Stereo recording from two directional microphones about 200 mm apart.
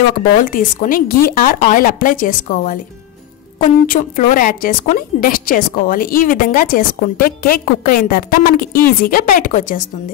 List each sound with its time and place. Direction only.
0.5 s a woman's voice: 45° left (ahead or behind)